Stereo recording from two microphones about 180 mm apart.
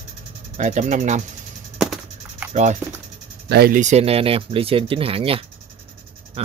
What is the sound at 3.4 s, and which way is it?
Speech, 60° right (ahead or behind).